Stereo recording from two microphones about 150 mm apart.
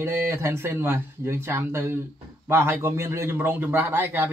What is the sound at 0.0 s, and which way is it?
A man's voice, 15° right (ahead or behind).